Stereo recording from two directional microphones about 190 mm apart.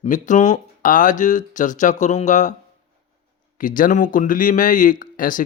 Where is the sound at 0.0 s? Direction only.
40° left (ahead or behind).